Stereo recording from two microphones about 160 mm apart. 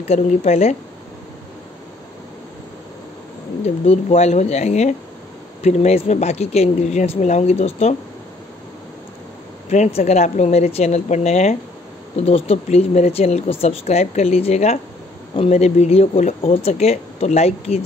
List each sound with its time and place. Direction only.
0.0 s speech: 45° left (ahead or behind)
3.8 s speech: 40° left (ahead or behind)
9.7 s speech: 45° left (ahead or behind)